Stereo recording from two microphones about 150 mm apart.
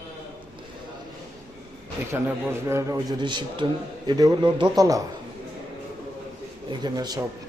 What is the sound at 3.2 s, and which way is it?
A man's voice, 30° right (ahead or behind).